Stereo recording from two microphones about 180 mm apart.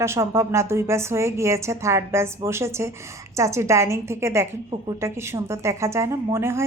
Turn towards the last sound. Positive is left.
turn(degrees=-15)  # may be behind; listen again after turning